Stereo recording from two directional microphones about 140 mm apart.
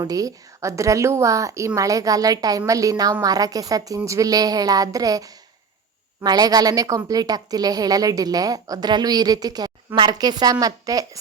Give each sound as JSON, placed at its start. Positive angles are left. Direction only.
{"t": 0.0, "sound": "a woman's voice", "side_deg": -25}